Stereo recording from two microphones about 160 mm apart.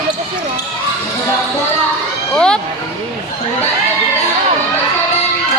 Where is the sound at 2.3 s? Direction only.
5° left (ahead or behind).